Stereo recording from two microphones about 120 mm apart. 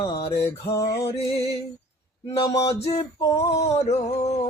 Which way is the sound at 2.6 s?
60° left (ahead or behind).